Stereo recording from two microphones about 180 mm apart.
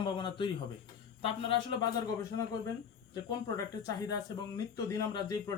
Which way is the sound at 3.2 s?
20° left (ahead or behind).